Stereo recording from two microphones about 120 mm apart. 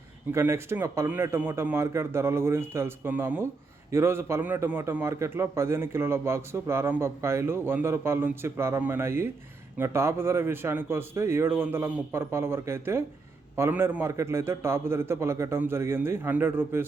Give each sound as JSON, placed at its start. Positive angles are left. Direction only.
{"t": 0.3, "sound": "a man's voice", "side_deg": -20}